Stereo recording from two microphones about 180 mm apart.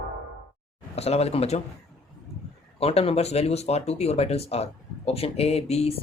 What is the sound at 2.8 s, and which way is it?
Speech, 35° left (ahead or behind).